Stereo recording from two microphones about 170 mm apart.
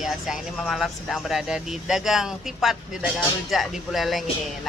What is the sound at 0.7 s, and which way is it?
Speech, centre (ahead or behind).